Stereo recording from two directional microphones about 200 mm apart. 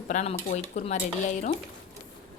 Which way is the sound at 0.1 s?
35° left (ahead or behind).